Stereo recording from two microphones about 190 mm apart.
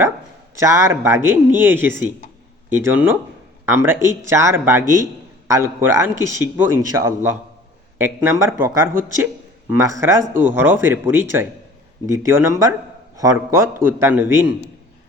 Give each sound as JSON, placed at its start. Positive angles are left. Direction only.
{"t": 0.6, "sound": "a man's voice", "side_deg": -15}